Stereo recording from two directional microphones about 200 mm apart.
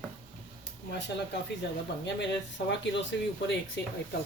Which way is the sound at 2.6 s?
60° left (ahead or behind).